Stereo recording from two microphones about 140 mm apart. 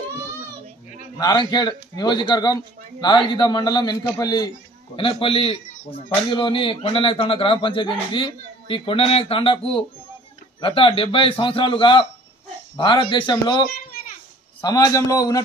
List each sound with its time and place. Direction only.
1.1 s a man's voice: 30° left (ahead or behind)